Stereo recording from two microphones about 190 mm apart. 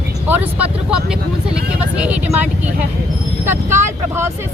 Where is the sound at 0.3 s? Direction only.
10° right (ahead or behind).